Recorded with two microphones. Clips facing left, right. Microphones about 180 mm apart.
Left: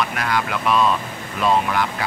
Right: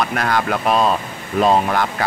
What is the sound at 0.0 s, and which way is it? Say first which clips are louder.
Speech: right 3 dB; 45° right (ahead or behind).